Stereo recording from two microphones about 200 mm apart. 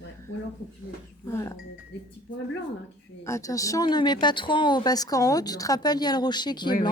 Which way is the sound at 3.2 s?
15° left (ahead or behind).